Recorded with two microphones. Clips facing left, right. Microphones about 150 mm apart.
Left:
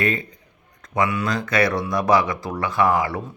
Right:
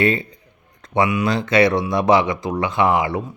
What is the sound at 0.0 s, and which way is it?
Speech, 30° right (ahead or behind).